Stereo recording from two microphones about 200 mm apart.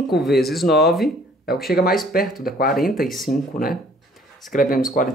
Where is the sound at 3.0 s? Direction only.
Centre (ahead or behind).